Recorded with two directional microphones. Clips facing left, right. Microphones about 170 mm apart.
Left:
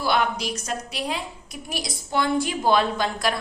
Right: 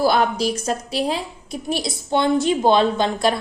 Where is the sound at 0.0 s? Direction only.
40° right (ahead or behind).